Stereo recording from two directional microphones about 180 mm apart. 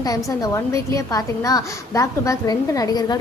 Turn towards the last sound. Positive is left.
turn(degrees=20)  # may be behind; listen again after turning